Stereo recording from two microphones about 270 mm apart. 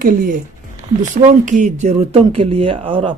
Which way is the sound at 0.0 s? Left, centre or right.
Right.